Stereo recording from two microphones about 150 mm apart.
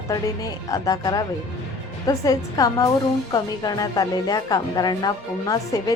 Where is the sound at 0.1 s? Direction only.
25° left (ahead or behind).